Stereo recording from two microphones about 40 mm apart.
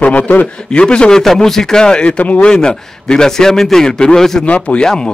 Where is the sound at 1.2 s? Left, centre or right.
Centre.